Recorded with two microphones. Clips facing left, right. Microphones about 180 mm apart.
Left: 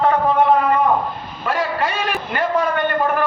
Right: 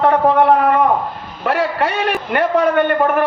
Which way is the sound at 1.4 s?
70° right (ahead or behind).